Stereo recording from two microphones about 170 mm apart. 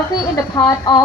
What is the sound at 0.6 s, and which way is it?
Speech, 20° left (ahead or behind).